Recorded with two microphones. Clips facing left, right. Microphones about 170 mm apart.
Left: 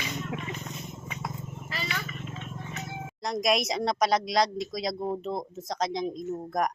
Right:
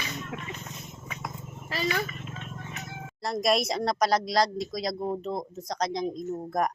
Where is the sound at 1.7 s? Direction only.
40° right (ahead or behind).